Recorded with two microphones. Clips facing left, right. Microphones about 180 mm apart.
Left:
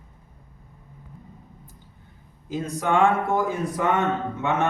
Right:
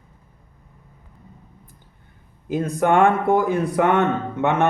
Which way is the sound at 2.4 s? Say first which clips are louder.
Right 6 dB; 55° right (ahead or behind).